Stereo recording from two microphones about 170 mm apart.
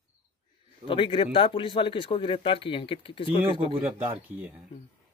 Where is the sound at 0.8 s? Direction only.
30° left (ahead or behind).